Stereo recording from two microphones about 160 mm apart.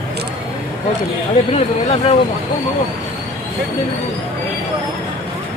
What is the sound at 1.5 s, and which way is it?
Speech, 45° left (ahead or behind).